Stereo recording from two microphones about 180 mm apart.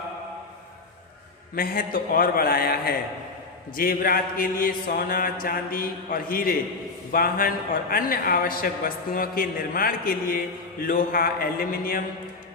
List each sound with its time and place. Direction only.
1.5 s a man's voice: 55° left (ahead or behind)